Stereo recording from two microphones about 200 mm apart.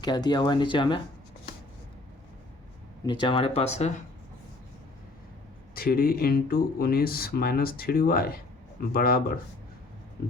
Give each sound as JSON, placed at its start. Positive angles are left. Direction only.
{"t": 0.0, "sound": "speech", "side_deg": 20}
{"t": 3.1, "sound": "speech", "side_deg": 25}
{"t": 5.7, "sound": "speech", "side_deg": 45}